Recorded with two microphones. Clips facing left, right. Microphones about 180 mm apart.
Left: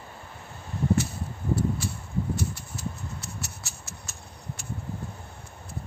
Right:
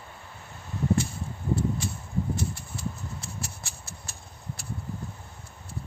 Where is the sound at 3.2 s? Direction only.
30° right (ahead or behind).